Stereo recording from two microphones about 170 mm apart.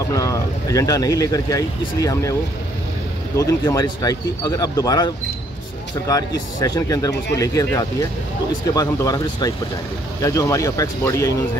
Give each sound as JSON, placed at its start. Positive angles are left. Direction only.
{"t": 0.1, "sound": "speech", "side_deg": 20}
{"t": 3.3, "sound": "speech", "side_deg": 20}